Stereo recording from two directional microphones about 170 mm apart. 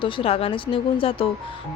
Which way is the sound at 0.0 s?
35° left (ahead or behind).